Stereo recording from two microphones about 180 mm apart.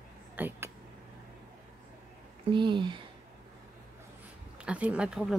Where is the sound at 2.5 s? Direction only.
25° right (ahead or behind).